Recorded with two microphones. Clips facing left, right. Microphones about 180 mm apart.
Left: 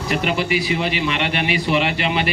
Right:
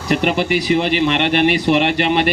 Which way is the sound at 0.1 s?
50° right (ahead or behind).